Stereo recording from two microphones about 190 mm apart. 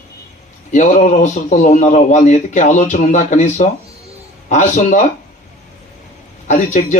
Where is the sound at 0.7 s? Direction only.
40° left (ahead or behind).